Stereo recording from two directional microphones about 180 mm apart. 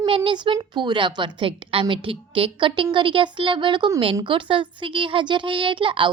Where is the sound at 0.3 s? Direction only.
25° right (ahead or behind).